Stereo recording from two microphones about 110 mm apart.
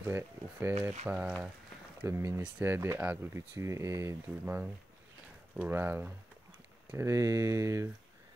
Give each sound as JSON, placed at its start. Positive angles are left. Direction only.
{"t": 0.0, "sound": "speech", "side_deg": -20}
{"t": 2.0, "sound": "speech", "side_deg": -25}